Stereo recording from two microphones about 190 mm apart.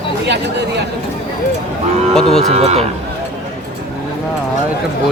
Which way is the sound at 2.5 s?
35° right (ahead or behind).